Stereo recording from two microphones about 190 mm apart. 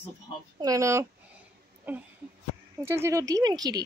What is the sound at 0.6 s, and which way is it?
Speech, 15° right (ahead or behind).